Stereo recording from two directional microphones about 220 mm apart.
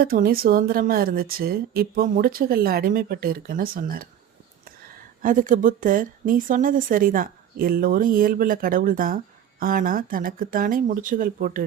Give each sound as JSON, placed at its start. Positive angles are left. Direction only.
{"t": 0.0, "sound": "a woman's voice", "side_deg": -40}